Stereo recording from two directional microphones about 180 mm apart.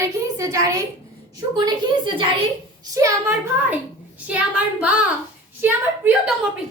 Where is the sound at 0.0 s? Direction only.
15° right (ahead or behind).